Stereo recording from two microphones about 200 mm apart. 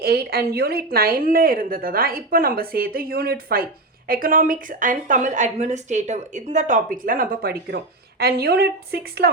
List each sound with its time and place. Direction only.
0.0 s a woman's voice: 50° right (ahead or behind)